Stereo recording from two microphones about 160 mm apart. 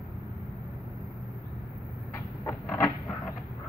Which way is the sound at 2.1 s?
15° left (ahead or behind).